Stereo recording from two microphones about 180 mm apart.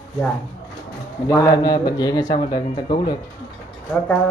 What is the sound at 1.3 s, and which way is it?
Speech, 20° left (ahead or behind).